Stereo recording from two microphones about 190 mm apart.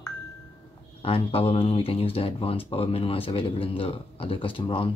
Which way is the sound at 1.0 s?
30° left (ahead or behind).